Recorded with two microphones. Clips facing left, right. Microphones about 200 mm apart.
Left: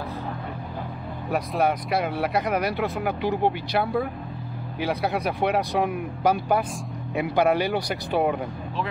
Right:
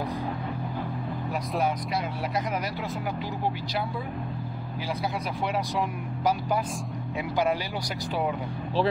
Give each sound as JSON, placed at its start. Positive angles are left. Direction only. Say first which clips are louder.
{"t": 1.3, "sound": "speech", "louder": "left 5 dB", "side_deg": 60}